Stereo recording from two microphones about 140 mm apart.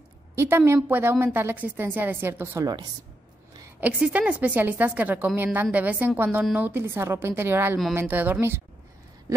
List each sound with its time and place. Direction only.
0.4 s a woman's voice: 15° right (ahead or behind)
2.6 s a woman's voice: 30° right (ahead or behind)
3.8 s a woman's voice: 10° right (ahead or behind)